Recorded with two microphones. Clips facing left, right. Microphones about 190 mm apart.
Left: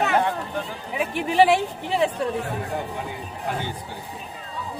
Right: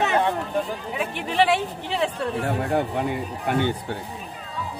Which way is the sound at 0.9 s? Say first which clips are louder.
Left 5 dB; 5° left (ahead or behind).